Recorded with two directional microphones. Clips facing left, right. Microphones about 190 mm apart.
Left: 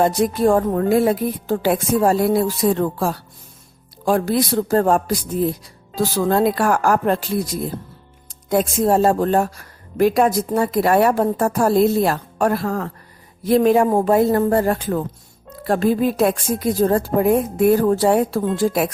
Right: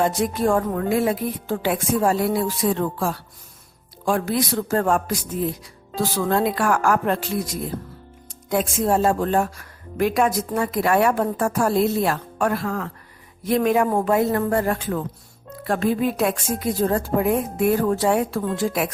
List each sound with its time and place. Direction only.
0.0 s speech: 35° left (ahead or behind)